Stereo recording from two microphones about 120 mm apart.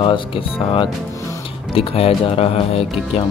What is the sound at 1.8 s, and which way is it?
Speech, 50° left (ahead or behind).